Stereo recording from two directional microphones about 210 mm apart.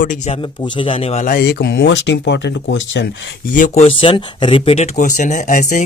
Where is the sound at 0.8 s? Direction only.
25° left (ahead or behind); by 3.1 s 60° left (ahead or behind).